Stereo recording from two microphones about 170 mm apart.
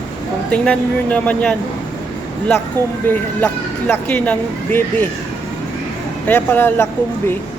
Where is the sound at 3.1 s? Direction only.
10° left (ahead or behind).